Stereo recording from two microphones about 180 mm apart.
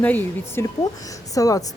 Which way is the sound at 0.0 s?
10° left (ahead or behind).